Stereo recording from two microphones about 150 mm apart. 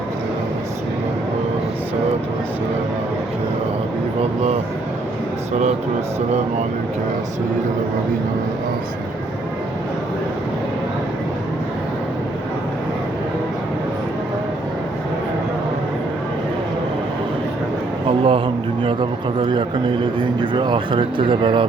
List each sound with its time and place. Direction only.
18.3 s a man's voice: 35° right (ahead or behind)